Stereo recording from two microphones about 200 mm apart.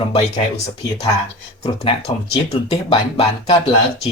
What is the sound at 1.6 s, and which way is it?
Speech, 30° left (ahead or behind).